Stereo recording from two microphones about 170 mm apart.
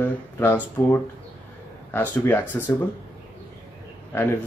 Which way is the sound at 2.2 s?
15° left (ahead or behind).